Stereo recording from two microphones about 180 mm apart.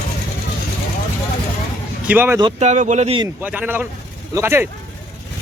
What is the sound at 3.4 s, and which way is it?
Speech, 10° right (ahead or behind).